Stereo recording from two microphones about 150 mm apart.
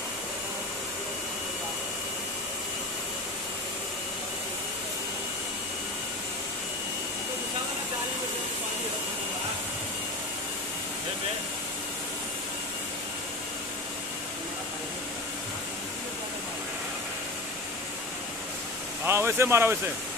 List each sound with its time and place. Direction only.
19.0 s speech: 15° right (ahead or behind)